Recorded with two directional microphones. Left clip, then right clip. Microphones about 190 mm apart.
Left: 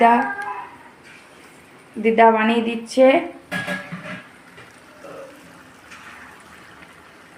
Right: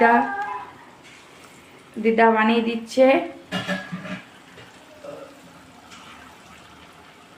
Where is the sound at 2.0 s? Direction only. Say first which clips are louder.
Left 3 dB; 15° left (ahead or behind).